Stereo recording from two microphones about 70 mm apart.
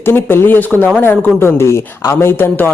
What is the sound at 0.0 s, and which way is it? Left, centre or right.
A man's voice, left.